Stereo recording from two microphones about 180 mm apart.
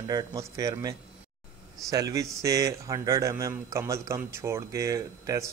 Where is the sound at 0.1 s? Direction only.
20° right (ahead or behind).